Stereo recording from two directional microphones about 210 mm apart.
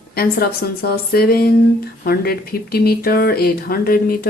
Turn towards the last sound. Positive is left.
turn(degrees=45)  # may be behind; listen again after turning